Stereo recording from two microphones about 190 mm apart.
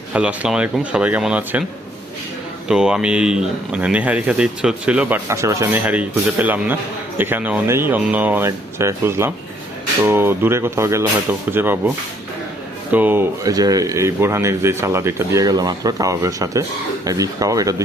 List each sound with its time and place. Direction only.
0.1 s speech: 5° right (ahead or behind)
2.6 s speech: 5° right (ahead or behind)
12.9 s speech: 10° right (ahead or behind)